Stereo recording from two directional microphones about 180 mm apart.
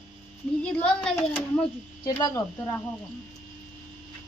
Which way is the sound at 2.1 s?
20° left (ahead or behind).